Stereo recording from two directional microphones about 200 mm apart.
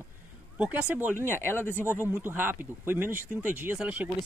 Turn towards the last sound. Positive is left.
turn(degrees=-5)  # may be behind; listen again after turning